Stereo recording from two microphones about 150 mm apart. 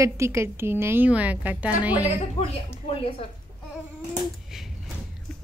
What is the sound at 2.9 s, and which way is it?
Speech, 40° left (ahead or behind).